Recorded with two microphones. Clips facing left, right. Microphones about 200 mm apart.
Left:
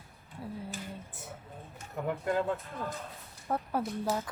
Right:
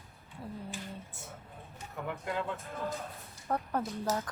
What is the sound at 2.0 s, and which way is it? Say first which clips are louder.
Speech: left 5 dB; 45° left (ahead or behind).